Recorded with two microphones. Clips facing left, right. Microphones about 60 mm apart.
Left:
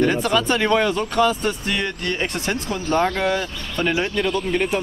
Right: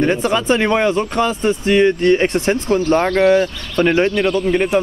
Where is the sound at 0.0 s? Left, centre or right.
Right.